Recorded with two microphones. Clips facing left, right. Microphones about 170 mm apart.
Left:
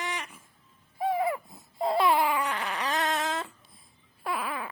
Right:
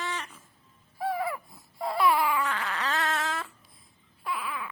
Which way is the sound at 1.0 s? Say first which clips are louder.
Left 3 dB; 20° left (ahead or behind).